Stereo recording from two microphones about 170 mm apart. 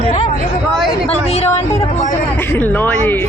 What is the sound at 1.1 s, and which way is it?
Speech, 40° left (ahead or behind).